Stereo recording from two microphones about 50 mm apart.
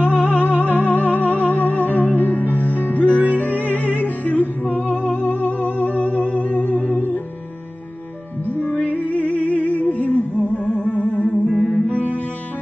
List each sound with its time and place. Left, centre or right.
0.0 s music: left
8.6 s music: left
10.7 s music: centre